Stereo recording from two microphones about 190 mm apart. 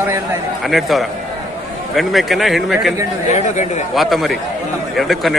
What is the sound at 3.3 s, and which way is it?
Speech, 35° left (ahead or behind).